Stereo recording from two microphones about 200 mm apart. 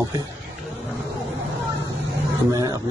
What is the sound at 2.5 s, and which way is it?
Speech, 20° right (ahead or behind).